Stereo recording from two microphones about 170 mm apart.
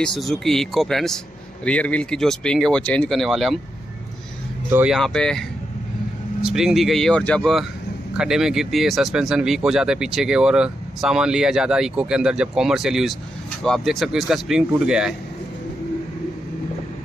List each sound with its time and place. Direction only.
0.0 s speech: centre (ahead or behind)
4.6 s speech: 10° right (ahead or behind)
4.9 s speech: 5° left (ahead or behind)
6.4 s speech: centre (ahead or behind)